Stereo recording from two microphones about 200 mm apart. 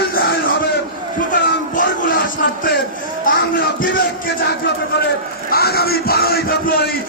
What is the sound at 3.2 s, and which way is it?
Speech, 55° left (ahead or behind).